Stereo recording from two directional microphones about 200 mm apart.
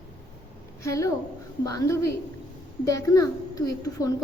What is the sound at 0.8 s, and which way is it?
A woman's voice, 15° left (ahead or behind).